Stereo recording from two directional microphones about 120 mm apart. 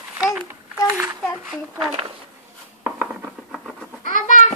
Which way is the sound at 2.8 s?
15° right (ahead or behind).